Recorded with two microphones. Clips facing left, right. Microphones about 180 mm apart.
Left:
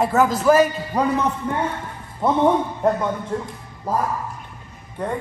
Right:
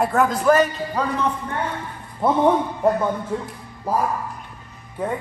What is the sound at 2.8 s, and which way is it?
Speech, centre (ahead or behind).